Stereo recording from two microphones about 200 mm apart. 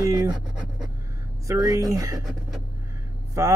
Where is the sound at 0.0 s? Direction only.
20° right (ahead or behind).